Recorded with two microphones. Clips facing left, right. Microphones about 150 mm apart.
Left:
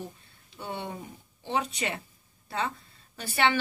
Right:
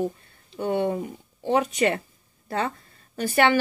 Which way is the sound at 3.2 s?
50° right (ahead or behind).